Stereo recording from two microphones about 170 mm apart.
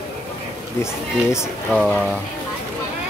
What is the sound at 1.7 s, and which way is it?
Speech, 5° left (ahead or behind).